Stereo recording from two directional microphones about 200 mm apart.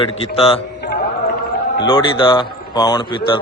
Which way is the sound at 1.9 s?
25° left (ahead or behind).